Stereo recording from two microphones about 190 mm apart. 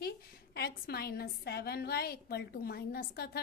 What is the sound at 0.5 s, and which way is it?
A woman's voice, 55° left (ahead or behind).